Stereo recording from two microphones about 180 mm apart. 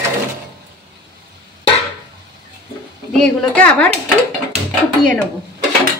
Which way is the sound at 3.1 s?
5° left (ahead or behind).